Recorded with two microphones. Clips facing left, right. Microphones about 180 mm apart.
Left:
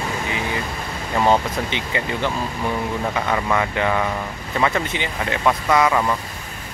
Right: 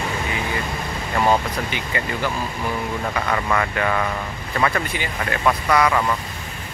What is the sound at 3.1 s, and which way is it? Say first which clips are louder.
Speech: even; 10° left (ahead or behind).